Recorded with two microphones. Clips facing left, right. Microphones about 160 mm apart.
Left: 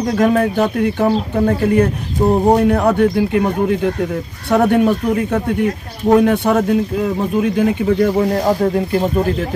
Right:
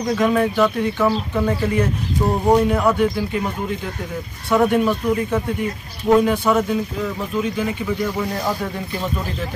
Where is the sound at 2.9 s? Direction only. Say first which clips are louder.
Left 6 dB; 65° left (ahead or behind).